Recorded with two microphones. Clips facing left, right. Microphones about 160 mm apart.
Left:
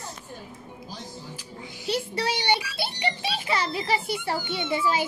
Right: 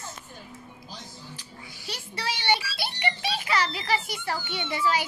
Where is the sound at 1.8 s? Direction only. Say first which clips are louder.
Left 10 dB; 30° left (ahead or behind).